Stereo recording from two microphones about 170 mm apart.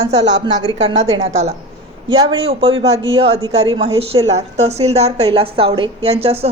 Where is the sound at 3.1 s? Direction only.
35° right (ahead or behind).